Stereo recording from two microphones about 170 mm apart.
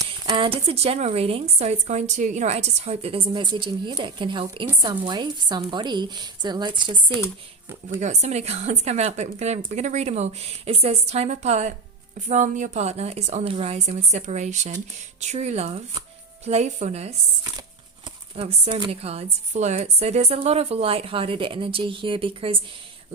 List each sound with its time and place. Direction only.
0.3 s a woman's voice: 30° right (ahead or behind)
7.9 s a woman's voice: 45° right (ahead or behind)
18.3 s a woman's voice: 35° right (ahead or behind)